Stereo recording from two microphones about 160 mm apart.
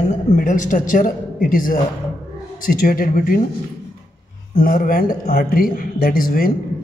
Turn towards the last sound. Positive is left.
turn(degrees=65)  # may be behind; listen again after turning